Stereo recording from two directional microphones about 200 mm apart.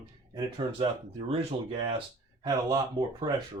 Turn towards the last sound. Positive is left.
turn(degrees=-20)  # may be behind; listen again after turning